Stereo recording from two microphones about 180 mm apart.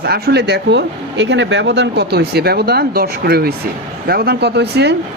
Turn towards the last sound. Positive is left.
turn(degrees=-70)  # may be behind; listen again after turning